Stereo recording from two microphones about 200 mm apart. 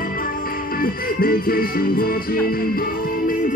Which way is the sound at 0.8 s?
45° left (ahead or behind).